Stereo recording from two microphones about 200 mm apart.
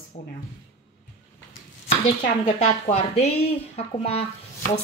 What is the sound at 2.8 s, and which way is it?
Speech, 30° left (ahead or behind).